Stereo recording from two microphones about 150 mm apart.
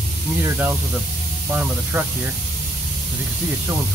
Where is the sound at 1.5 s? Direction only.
10° right (ahead or behind).